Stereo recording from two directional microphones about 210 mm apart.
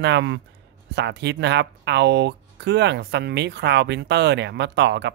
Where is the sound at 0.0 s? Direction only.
55° right (ahead or behind).